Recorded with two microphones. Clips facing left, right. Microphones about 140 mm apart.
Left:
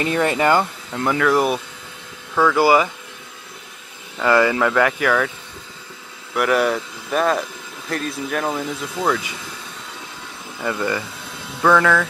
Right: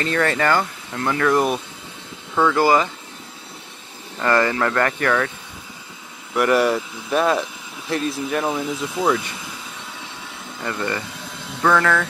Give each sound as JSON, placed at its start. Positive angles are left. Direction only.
{"t": 0.0, "sound": "speech", "side_deg": 15}
{"t": 1.2, "sound": "speech", "side_deg": 5}
{"t": 4.2, "sound": "speech", "side_deg": 10}
{"t": 6.3, "sound": "speech", "side_deg": 0}
{"t": 10.6, "sound": "speech", "side_deg": 5}